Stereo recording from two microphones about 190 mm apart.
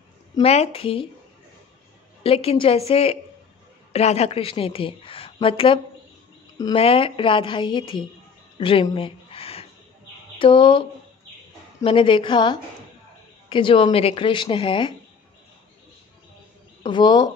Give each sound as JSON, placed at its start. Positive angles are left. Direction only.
{"t": 0.4, "sound": "a woman's voice", "side_deg": 30}
{"t": 2.2, "sound": "a woman's voice", "side_deg": 30}
{"t": 8.5, "sound": "a sound", "side_deg": 25}
{"t": 10.4, "sound": "a woman's voice", "side_deg": 25}
{"t": 16.8, "sound": "a woman's voice", "side_deg": 25}